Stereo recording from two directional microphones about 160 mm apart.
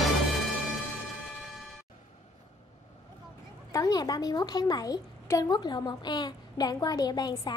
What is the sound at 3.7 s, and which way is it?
A woman's voice, 20° left (ahead or behind).